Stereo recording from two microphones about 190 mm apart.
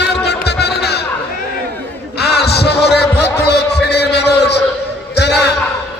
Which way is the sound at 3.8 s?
60° left (ahead or behind).